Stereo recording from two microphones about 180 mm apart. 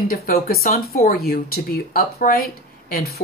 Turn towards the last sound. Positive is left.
turn(degrees=55)  # may be behind; listen again after turning